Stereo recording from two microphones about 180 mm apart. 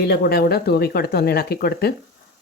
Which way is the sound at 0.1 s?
60° left (ahead or behind).